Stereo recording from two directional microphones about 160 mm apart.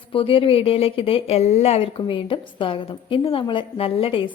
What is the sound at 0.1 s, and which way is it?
A woman's voice, 35° left (ahead or behind).